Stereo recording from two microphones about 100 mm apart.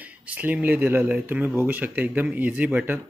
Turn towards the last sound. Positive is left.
turn(degrees=-15)  # may be behind; listen again after turning